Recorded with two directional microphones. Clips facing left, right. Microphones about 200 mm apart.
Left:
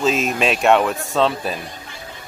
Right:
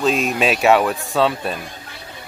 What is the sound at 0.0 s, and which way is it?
A man's voice, centre (ahead or behind).